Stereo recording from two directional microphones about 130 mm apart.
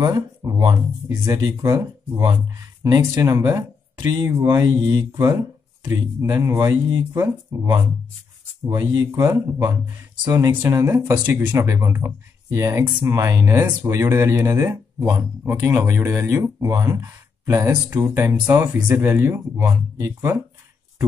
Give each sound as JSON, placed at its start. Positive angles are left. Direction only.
{"t": 0.0, "sound": "speech", "side_deg": -30}
{"t": 8.6, "sound": "speech", "side_deg": -25}
{"t": 18.3, "sound": "speech", "side_deg": -25}
{"t": 18.7, "sound": "speech", "side_deg": -15}